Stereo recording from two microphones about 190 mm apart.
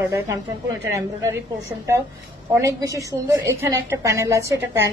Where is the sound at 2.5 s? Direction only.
15° right (ahead or behind).